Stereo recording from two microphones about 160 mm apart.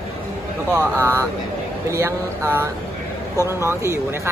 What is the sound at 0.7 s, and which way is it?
Speech, 20° right (ahead or behind).